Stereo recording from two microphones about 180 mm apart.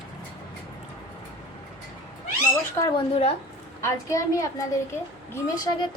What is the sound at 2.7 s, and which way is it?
Speech, 30° left (ahead or behind).